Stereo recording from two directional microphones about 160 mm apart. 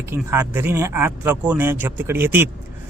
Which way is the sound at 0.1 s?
15° right (ahead or behind).